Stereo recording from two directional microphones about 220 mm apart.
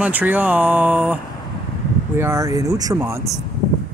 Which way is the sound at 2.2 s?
15° right (ahead or behind).